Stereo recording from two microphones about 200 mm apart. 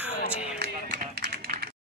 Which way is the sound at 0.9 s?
45° right (ahead or behind).